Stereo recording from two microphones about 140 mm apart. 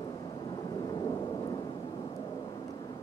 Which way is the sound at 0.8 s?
30° left (ahead or behind).